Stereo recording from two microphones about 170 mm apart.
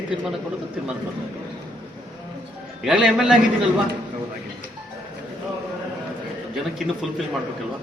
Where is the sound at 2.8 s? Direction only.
5° right (ahead or behind).